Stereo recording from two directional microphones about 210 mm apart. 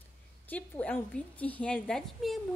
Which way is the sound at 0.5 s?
5° left (ahead or behind).